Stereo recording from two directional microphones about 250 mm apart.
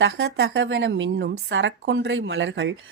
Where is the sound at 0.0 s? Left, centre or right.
Right.